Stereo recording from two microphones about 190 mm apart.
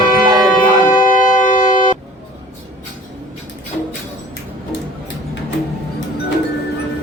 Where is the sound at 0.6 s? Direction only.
45° left (ahead or behind).